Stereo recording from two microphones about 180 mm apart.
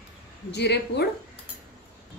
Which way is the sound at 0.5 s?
70° left (ahead or behind).